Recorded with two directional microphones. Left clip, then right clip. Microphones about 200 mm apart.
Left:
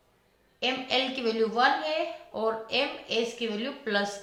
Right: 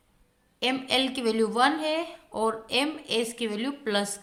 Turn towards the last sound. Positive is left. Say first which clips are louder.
# right 1 dB
turn(degrees=-40)  # may be behind; listen again after turning